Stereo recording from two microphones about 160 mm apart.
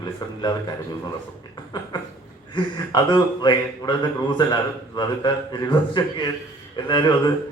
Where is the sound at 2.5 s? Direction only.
25° left (ahead or behind).